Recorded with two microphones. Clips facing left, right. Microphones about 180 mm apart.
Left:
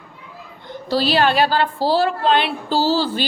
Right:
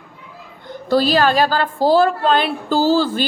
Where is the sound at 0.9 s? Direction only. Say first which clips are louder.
Right 2 dB; 45° right (ahead or behind).